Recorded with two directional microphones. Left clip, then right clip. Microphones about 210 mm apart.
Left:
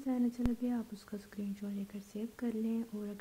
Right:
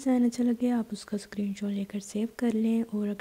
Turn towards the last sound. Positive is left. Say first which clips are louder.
# right 10 dB
turn(degrees=-35)  # may be behind; listen again after turning